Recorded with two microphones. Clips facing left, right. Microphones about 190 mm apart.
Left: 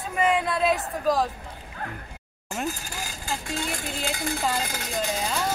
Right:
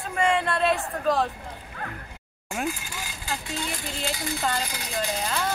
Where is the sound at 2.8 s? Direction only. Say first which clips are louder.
Left 2 dB; 45° left (ahead or behind).